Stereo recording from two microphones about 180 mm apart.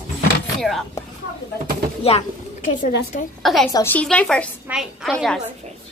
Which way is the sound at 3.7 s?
10° left (ahead or behind).